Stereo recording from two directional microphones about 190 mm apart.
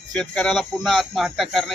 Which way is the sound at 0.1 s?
5° left (ahead or behind).